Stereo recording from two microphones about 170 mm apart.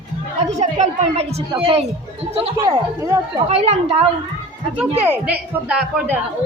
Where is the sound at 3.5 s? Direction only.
35° right (ahead or behind).